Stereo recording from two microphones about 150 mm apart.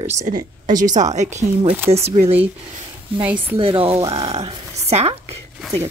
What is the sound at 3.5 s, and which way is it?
Speech, 35° right (ahead or behind).